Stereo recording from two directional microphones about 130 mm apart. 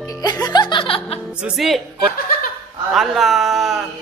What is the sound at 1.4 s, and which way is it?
Speech, centre (ahead or behind).